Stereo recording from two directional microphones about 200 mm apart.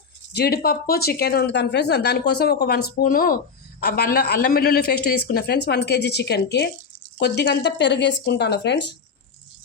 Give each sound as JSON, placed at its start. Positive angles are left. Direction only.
{"t": 0.3, "sound": "speech", "side_deg": 50}